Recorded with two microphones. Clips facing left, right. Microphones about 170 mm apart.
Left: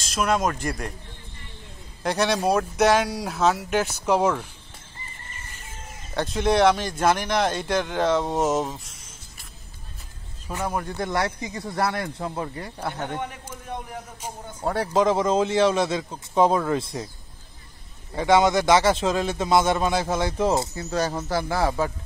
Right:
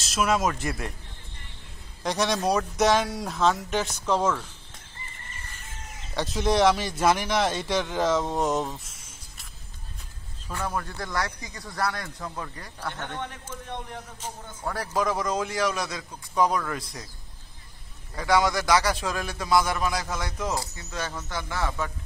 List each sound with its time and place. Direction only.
0.0 s speech: centre (ahead or behind)
2.0 s speech: centre (ahead or behind)
6.1 s speech: centre (ahead or behind)
10.5 s a man's voice: 20° left (ahead or behind)
12.9 s a man's voice: 10° left (ahead or behind)
14.6 s a man's voice: 25° left (ahead or behind)
18.1 s a man's voice: 25° left (ahead or behind)